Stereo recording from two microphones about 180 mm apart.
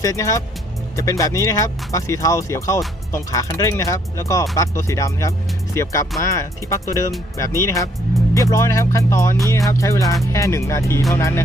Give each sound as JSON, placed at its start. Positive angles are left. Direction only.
{"t": 0.0, "sound": "speech", "side_deg": 20}